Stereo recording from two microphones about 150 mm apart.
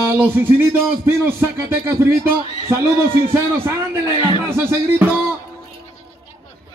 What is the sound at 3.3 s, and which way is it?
Speech, 15° right (ahead or behind).